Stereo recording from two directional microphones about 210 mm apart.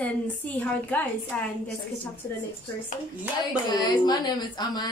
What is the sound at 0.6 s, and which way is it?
Speech, 5° left (ahead or behind).